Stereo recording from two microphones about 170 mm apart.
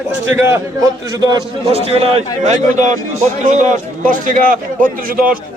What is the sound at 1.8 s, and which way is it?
A man's voice, 35° right (ahead or behind).